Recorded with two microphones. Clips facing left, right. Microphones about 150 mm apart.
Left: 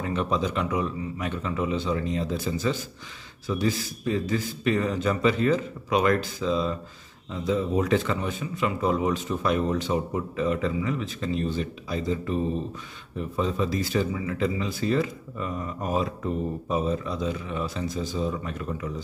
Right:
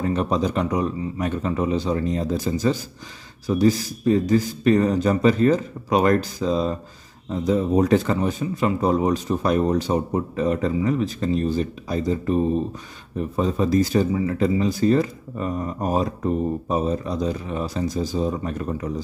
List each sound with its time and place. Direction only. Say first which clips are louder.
0.0 s speech: right 4 dB; 40° right (ahead or behind)